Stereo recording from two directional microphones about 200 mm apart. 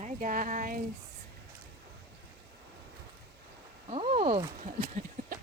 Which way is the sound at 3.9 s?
30° right (ahead or behind).